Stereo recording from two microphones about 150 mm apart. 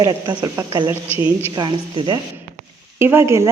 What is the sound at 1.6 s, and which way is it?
Speech, 30° right (ahead or behind).